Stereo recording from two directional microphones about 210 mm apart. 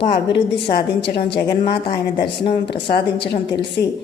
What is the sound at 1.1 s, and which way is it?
A woman's voice, 25° left (ahead or behind).